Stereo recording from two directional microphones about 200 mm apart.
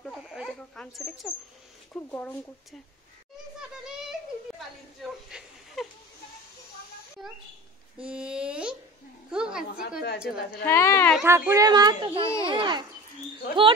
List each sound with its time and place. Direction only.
0.0 s a woman's voice: centre (ahead or behind)
4.6 s a woman's voice: centre (ahead or behind)
8.0 s speech: 5° right (ahead or behind)
9.3 s a sound: 5° right (ahead or behind)
9.8 s a woman's voice: 50° left (ahead or behind)
10.6 s a woman's voice: 15° left (ahead or behind)
11.2 s a child's voice: 15° right (ahead or behind)